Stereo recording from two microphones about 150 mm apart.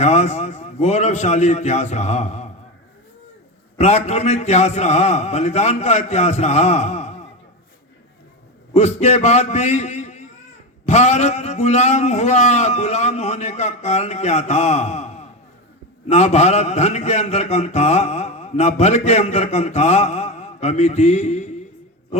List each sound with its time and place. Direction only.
0.0 s a man's voice: 50° left (ahead or behind)
3.8 s a man's voice: 50° left (ahead or behind)
8.7 s a man's voice: 45° left (ahead or behind)